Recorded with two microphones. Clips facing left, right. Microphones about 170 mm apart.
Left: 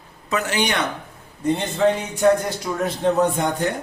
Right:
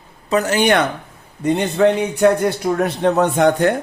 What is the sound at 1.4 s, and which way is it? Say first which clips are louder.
Speech: right 4 dB; 70° right (ahead or behind).